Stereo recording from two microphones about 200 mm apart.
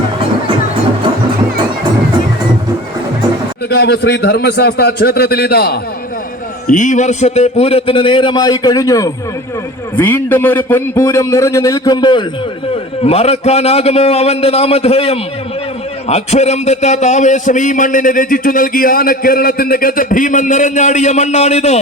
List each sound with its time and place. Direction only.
3.7 s a man's voice: 55° left (ahead or behind)
6.7 s a man's voice: 40° left (ahead or behind)